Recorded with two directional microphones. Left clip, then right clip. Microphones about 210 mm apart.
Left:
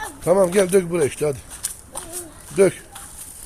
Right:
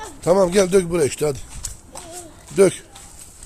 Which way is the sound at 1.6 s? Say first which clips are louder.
Left 3 dB; 40° left (ahead or behind).